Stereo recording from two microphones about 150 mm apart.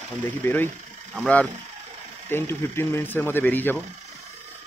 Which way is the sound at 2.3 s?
15° left (ahead or behind).